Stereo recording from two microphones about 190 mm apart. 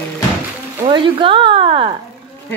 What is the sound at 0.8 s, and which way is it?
Speech, 25° right (ahead or behind).